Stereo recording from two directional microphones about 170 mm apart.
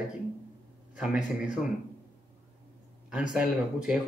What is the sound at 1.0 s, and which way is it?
Speech, 5° right (ahead or behind).